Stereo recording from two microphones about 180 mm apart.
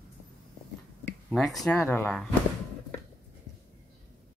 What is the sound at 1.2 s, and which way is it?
Speech, centre (ahead or behind).